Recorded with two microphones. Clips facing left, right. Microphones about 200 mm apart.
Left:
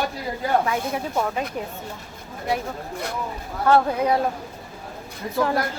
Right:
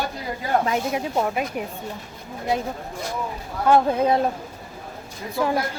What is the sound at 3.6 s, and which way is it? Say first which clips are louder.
Speech: right 1 dB; 20° right (ahead or behind).